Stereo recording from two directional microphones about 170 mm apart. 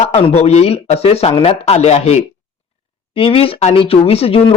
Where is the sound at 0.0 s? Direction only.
35° left (ahead or behind).